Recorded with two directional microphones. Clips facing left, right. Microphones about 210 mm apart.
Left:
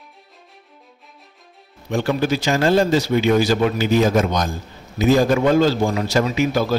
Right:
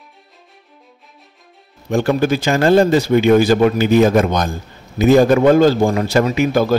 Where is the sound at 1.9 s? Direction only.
50° right (ahead or behind).